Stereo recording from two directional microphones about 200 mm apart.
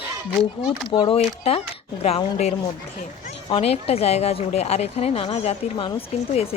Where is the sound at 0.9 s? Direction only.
25° left (ahead or behind).